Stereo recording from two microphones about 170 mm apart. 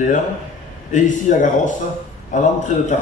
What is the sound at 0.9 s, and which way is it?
A man's voice, 45° left (ahead or behind).